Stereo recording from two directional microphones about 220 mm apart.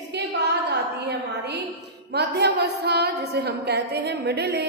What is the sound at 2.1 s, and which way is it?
A woman's voice, 50° right (ahead or behind).